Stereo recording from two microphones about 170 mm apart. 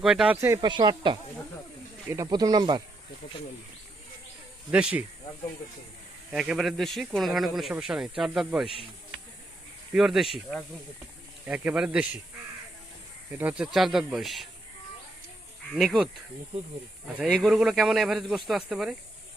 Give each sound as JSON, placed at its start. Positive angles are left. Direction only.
{"t": 0.0, "sound": "speech", "side_deg": -5}
{"t": 0.4, "sound": "speech", "side_deg": -15}
{"t": 0.7, "sound": "speech", "side_deg": -25}
{"t": 2.2, "sound": "speech", "side_deg": -25}
{"t": 4.7, "sound": "speech", "side_deg": -5}
{"t": 6.3, "sound": "speech", "side_deg": -5}
{"t": 9.9, "sound": "speech", "side_deg": 0}
{"t": 13.3, "sound": "speech", "side_deg": -10}
{"t": 15.7, "sound": "speech", "side_deg": -5}
{"t": 17.3, "sound": "speech", "side_deg": -5}